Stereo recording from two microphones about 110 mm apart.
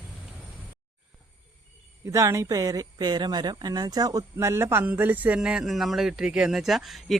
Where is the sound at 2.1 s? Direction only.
30° right (ahead or behind).